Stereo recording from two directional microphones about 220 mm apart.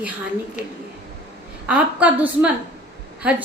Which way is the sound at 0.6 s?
35° left (ahead or behind).